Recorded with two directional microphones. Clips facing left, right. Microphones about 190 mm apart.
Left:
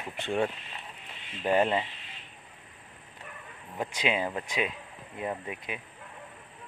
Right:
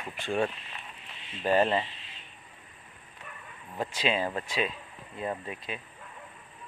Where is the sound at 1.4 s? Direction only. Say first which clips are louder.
Even; 15° left (ahead or behind).